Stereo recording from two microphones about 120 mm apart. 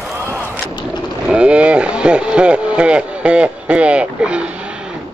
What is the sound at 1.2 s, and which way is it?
Speech, 10° right (ahead or behind).